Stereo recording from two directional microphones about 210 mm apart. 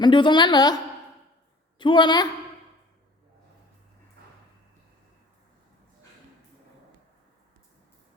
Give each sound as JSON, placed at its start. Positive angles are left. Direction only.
{"t": 0.0, "sound": "a woman's voice", "side_deg": 20}
{"t": 1.8, "sound": "a woman's voice", "side_deg": 20}